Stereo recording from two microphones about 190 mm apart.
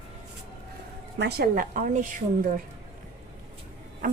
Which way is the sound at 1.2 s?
60° right (ahead or behind).